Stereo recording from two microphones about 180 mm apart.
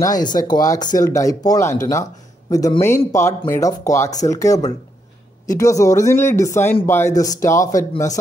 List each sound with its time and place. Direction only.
0.0 s speech: 20° left (ahead or behind)